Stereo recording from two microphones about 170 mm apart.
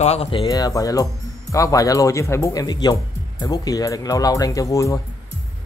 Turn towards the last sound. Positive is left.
turn(degrees=20)  # may be behind; listen again after turning